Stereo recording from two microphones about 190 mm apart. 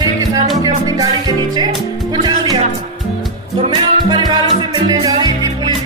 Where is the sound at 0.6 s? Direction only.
20° right (ahead or behind).